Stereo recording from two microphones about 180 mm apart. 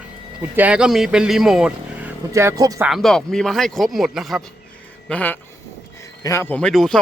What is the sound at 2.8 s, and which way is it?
Speech, centre (ahead or behind).